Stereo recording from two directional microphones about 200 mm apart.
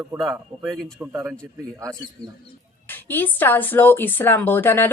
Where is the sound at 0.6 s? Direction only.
5° left (ahead or behind); by 2.0 s 15° right (ahead or behind).